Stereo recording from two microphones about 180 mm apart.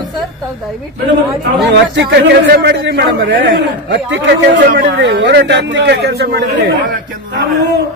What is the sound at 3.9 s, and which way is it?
A man's voice, 80° right.